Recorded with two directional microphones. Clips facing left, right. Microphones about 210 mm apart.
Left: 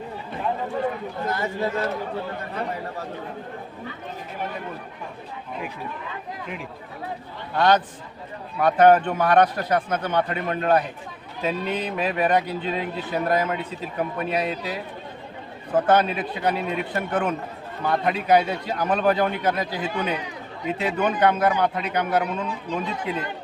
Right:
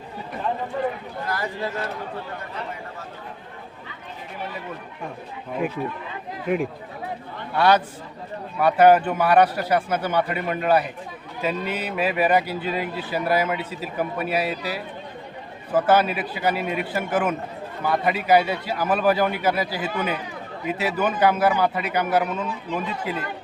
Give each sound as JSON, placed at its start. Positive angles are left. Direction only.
{"t": 1.3, "sound": "speech", "side_deg": 25}
{"t": 6.5, "sound": "speech", "side_deg": -55}
{"t": 7.5, "sound": "speech", "side_deg": -10}